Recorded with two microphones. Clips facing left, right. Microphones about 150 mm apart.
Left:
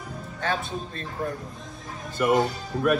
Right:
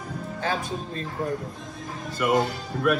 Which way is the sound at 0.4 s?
35° right (ahead or behind).